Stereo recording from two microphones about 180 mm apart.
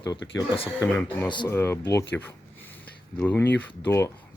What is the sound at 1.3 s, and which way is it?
Speech, 25° left (ahead or behind).